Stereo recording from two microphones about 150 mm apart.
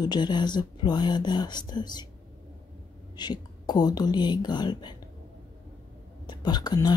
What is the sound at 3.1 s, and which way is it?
Speech, 30° left (ahead or behind).